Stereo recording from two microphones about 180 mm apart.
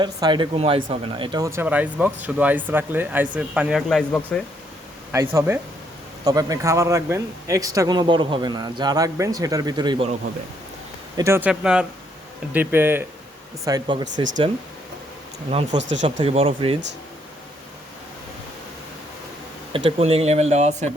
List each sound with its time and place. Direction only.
0.0 s speech: 25° right (ahead or behind); by 4.4 s 5° left (ahead or behind)
5.1 s speech: 15° right (ahead or behind)
11.2 s speech: 10° right (ahead or behind)
13.7 s speech: 25° right (ahead or behind)
15.4 s speech: 30° right (ahead or behind)
19.7 s speech: 30° right (ahead or behind)